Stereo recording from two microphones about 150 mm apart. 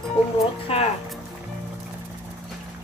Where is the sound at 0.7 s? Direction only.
40° left (ahead or behind).